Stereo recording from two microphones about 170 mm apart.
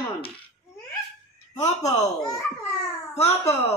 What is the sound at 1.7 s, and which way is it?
Speech, 45° left (ahead or behind).